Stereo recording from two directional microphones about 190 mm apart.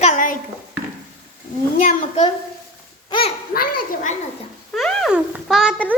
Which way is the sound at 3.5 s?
50° left (ahead or behind).